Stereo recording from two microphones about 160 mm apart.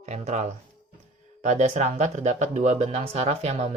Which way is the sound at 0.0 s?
45° right (ahead or behind).